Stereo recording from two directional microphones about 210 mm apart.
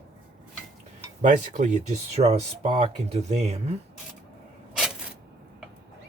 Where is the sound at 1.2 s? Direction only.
35° right (ahead or behind).